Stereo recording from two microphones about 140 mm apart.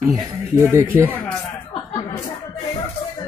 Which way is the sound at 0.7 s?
15° right (ahead or behind).